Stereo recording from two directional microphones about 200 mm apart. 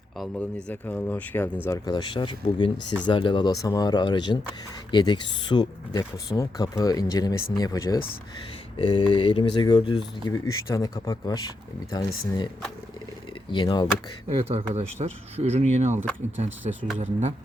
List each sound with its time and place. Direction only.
0.2 s speech: 10° left (ahead or behind)
13.5 s speech: 25° left (ahead or behind)
14.3 s speech: 30° right (ahead or behind)
17.0 s speech: 35° right (ahead or behind)